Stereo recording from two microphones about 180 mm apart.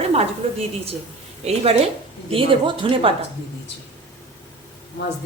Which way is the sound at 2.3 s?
30° right (ahead or behind).